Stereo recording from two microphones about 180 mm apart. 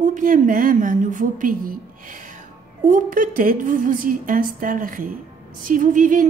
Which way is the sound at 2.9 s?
50° right (ahead or behind).